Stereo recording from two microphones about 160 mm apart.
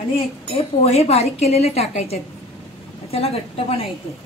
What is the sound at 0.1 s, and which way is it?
A woman's voice, 40° left (ahead or behind).